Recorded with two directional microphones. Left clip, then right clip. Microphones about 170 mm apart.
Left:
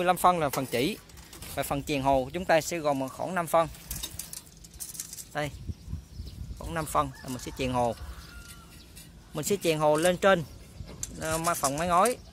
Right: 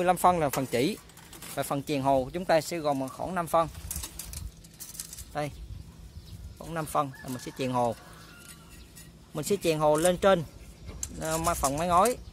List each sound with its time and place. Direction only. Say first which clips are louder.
0.0 s speech: even; 20° right (ahead or behind); by 4.1 s centre (ahead or behind)
5.3 s speech: left 1 dB; 5° right (ahead or behind)
6.6 s speech: left 1 dB; centre (ahead or behind)
9.3 s speech: even; 5° right (ahead or behind)